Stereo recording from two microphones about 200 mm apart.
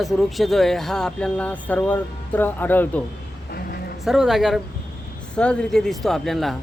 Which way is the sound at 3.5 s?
50° left (ahead or behind).